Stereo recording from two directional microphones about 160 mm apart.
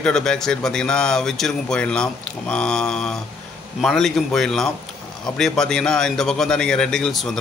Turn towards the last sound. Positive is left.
turn(degrees=0)  # may be behind; listen again after turning